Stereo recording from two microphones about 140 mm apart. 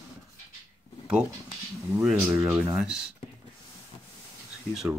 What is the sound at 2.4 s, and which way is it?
Speech, 20° right (ahead or behind).